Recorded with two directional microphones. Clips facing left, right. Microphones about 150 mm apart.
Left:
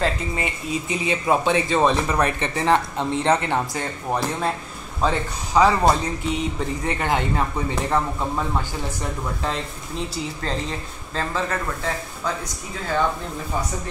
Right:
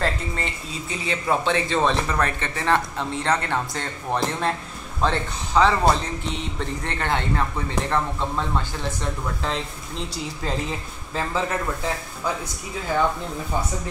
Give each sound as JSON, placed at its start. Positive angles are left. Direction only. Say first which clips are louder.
{"t": 0.0, "sound": "speech", "louder": "left 2 dB", "side_deg": 15}
{"t": 10.7, "sound": "speech", "louder": "even", "side_deg": -10}